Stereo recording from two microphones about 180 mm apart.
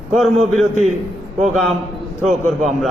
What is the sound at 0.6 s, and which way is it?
Speech, 40° right (ahead or behind).